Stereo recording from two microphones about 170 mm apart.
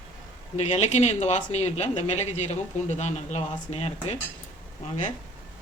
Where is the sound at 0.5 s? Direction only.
40° left (ahead or behind).